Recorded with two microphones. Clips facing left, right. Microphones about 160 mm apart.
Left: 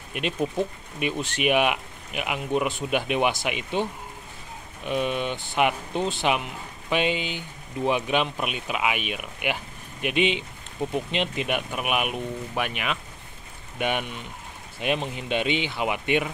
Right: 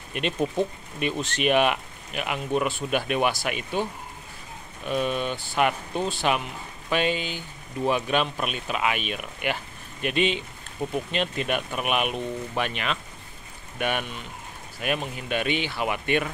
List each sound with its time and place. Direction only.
0.1 s speech: 5° left (ahead or behind)
4.8 s speech: 15° left (ahead or behind)